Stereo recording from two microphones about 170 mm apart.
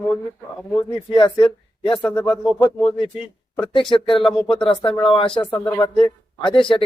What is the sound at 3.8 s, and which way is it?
Speech, 30° left (ahead or behind).